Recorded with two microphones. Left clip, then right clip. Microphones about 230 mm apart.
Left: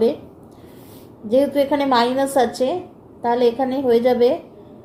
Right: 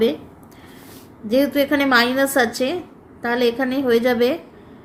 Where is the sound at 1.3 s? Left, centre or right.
Right.